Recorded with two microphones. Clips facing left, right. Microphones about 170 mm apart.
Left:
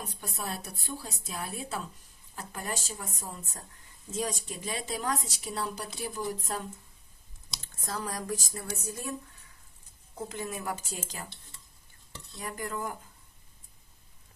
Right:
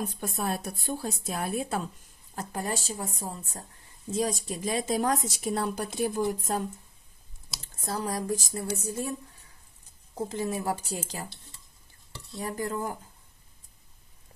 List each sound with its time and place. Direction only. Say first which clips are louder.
0.0 s a woman's voice: right 7 dB; 50° right (ahead or behind)
2.3 s a woman's voice: right 5 dB; 35° right (ahead or behind)
7.5 s a sound: right 1 dB; centre (ahead or behind)
7.8 s speech: right 5 dB; 30° right (ahead or behind)
10.1 s speech: right 6 dB; 35° right (ahead or behind)
12.4 s speech: right 5 dB; 30° right (ahead or behind)